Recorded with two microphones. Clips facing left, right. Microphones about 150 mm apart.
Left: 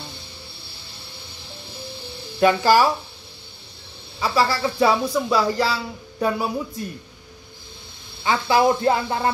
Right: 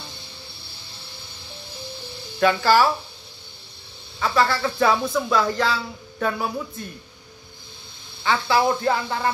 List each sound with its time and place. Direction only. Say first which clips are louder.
2.4 s speech: left 2 dB; 15° left (ahead or behind)
4.2 s speech: even; 10° left (ahead or behind)
8.2 s speech: left 2 dB; 20° left (ahead or behind)